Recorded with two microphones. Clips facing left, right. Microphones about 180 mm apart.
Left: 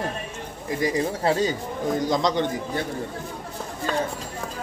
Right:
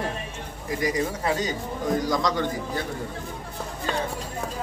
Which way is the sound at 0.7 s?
25° left (ahead or behind).